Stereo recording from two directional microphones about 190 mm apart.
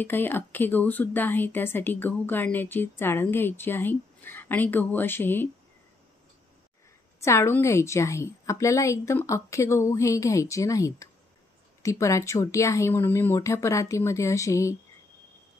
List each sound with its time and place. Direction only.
0.0 s speech: 10° left (ahead or behind)
7.2 s speech: 15° left (ahead or behind)